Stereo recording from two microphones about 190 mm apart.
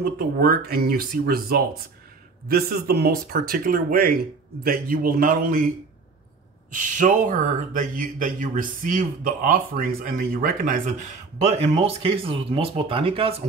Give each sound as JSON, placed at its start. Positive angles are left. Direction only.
{"t": 0.0, "sound": "speech", "side_deg": -50}
{"t": 6.7, "sound": "speech", "side_deg": -40}
{"t": 11.4, "sound": "speech", "side_deg": -35}